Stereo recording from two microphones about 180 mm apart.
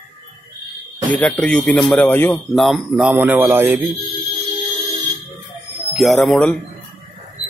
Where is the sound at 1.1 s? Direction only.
10° left (ahead or behind); by 3.8 s 10° right (ahead or behind).